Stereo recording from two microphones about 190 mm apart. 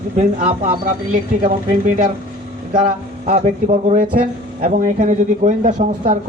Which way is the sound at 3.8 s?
45° right (ahead or behind).